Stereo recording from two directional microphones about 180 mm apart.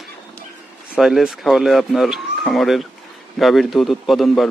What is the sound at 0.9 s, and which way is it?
Speech, centre (ahead or behind).